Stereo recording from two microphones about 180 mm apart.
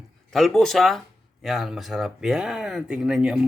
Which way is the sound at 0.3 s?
Centre (ahead or behind).